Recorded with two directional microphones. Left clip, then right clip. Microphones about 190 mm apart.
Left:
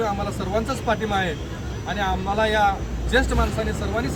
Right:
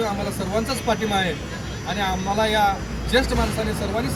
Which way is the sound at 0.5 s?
15° right (ahead or behind).